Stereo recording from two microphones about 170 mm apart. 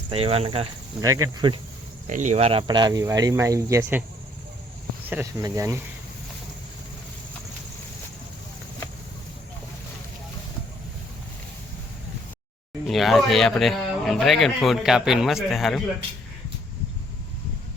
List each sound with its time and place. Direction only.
0.1 s speech: 35° right (ahead or behind)
1.0 s speech: 20° right (ahead or behind)
2.0 s speech: 45° right (ahead or behind); by 4.0 s 15° right (ahead or behind)
5.0 s speech: 15° right (ahead or behind)
12.9 s speech: centre (ahead or behind)